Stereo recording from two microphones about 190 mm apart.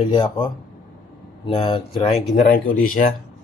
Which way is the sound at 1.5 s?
25° left (ahead or behind).